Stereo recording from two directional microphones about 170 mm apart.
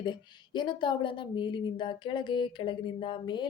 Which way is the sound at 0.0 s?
25° left (ahead or behind).